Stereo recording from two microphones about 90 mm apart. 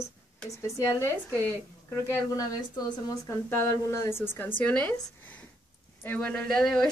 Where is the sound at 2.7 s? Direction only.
50° left (ahead or behind).